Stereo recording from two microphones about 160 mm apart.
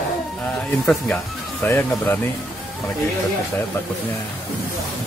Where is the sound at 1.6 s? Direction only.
10° left (ahead or behind).